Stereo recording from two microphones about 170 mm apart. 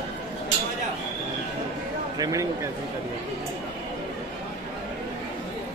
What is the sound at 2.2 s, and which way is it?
Speech, 20° right (ahead or behind).